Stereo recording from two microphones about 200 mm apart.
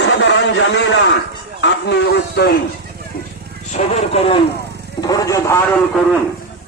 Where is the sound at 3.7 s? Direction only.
30° left (ahead or behind).